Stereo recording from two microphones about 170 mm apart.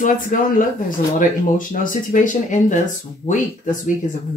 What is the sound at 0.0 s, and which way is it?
Speech, 55° left (ahead or behind).